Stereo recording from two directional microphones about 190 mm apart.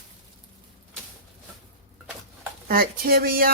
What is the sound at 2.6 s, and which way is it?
Speech, 50° right (ahead or behind).